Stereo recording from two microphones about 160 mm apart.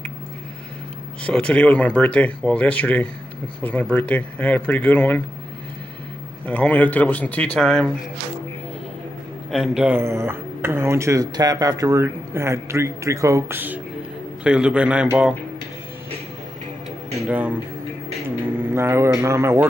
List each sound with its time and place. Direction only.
1.2 s speech: 5° left (ahead or behind)
6.4 s speech: 10° left (ahead or behind)
9.5 s speech: 5° right (ahead or behind)
17.3 s speech: 10° right (ahead or behind)
18.7 s speech: 15° right (ahead or behind)